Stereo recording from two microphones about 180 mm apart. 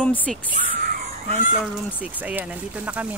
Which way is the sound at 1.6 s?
5° right (ahead or behind).